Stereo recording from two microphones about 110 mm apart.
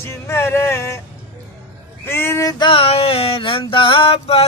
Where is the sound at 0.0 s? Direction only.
25° left (ahead or behind).